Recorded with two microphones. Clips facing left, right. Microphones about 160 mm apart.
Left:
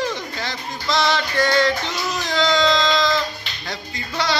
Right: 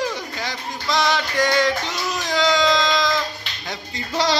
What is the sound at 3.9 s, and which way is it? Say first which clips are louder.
Music: right 3 dB; 35° right (ahead or behind).